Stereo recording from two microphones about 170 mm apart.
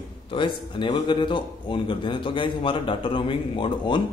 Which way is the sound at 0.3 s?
30° left (ahead or behind).